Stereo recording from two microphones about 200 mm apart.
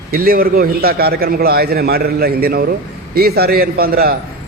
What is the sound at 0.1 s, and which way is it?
A man's voice, 50° right (ahead or behind).